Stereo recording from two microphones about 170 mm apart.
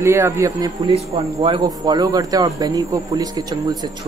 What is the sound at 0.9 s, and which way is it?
Speech, 35° right (ahead or behind).